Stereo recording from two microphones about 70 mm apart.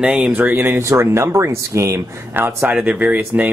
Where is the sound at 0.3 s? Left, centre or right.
Right.